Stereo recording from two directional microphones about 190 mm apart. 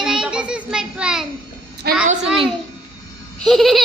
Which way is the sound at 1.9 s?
55° right (ahead or behind).